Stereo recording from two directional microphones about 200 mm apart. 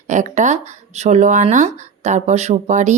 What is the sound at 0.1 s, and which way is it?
Speech, 35° right (ahead or behind).